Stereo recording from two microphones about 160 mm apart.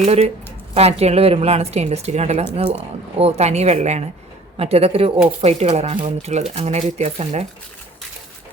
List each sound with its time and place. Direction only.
0.0 s a woman's voice: 40° right (ahead or behind)